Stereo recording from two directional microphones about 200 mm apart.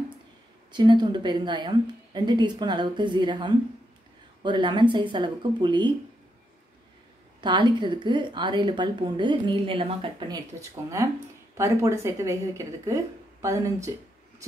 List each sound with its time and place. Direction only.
0.7 s a woman's voice: 20° right (ahead or behind)
7.4 s a woman's voice: 25° right (ahead or behind)
11.5 s speech: 15° right (ahead or behind)